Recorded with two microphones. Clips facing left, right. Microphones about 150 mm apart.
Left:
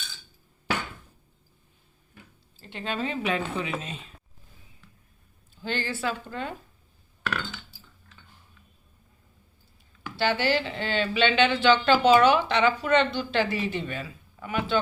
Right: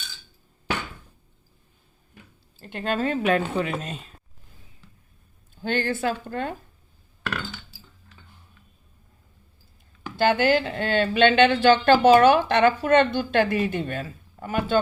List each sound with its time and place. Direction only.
2.6 s a woman's voice: 50° right (ahead or behind)
5.6 s a woman's voice: 55° right (ahead or behind)
10.2 s a woman's voice: 45° right (ahead or behind)